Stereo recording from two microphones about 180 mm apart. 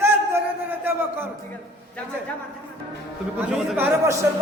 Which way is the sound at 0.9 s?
10° right (ahead or behind).